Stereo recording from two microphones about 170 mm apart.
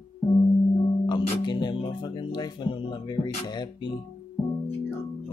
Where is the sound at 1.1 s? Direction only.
25° left (ahead or behind).